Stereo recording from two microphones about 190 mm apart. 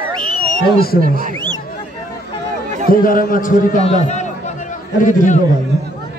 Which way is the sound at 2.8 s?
45° left (ahead or behind).